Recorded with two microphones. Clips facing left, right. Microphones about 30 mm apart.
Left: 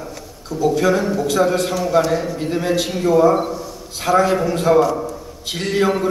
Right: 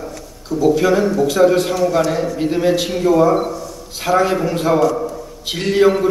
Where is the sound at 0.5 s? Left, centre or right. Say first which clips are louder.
Right 3 dB; centre.